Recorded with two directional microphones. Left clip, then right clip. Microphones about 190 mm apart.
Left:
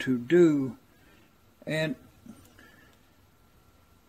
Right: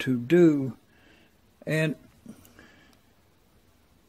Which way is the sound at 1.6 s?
55° right (ahead or behind).